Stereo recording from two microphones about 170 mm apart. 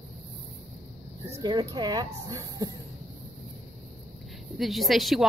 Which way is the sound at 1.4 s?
25° right (ahead or behind).